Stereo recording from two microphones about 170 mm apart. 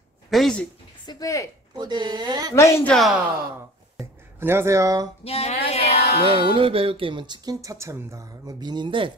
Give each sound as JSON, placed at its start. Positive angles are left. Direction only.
{"t": 0.3, "sound": "speech", "side_deg": 5}
{"t": 1.0, "sound": "speech", "side_deg": 20}
{"t": 1.8, "sound": "speech", "side_deg": -25}
{"t": 2.5, "sound": "a woman's voice", "side_deg": 15}
{"t": 2.9, "sound": "speech", "side_deg": 0}
{"t": 4.0, "sound": "speech", "side_deg": -15}
{"t": 5.2, "sound": "a sound", "side_deg": 35}
{"t": 5.7, "sound": "music", "side_deg": 35}
{"t": 6.2, "sound": "speech", "side_deg": -30}